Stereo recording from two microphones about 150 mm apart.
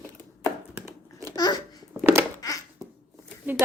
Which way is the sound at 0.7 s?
20° right (ahead or behind).